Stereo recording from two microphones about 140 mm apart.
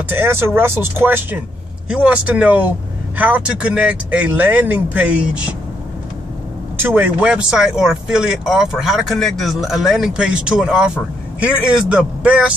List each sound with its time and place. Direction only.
0.1 s speech: 15° right (ahead or behind)
6.8 s speech: 15° right (ahead or behind)